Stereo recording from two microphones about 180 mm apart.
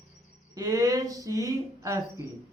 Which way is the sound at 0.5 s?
20° right (ahead or behind).